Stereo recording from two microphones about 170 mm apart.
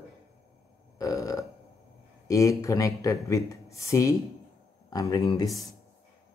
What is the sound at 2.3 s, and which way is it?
Speech, 20° left (ahead or behind).